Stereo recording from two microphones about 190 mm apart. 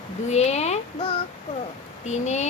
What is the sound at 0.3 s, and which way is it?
Speech, 35° left (ahead or behind).